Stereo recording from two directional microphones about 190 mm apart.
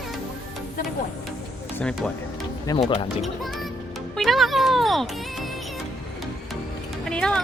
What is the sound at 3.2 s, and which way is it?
A child's voice, centre (ahead or behind).